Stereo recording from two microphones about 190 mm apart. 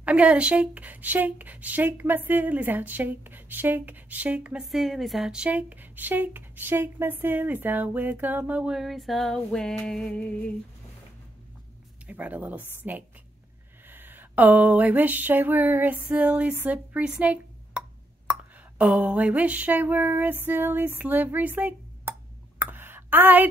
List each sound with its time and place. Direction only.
0.0 s speech: 5° right (ahead or behind)
12.1 s speech: 10° right (ahead or behind)
13.8 s a sound: 10° right (ahead or behind)